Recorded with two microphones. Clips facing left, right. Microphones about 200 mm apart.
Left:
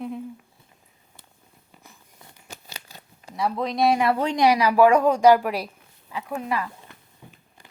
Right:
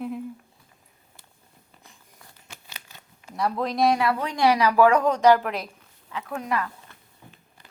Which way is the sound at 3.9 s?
25° left (ahead or behind).